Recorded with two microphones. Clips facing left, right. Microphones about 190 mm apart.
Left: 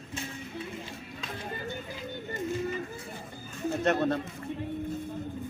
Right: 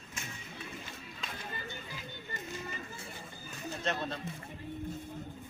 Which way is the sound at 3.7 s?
55° left (ahead or behind).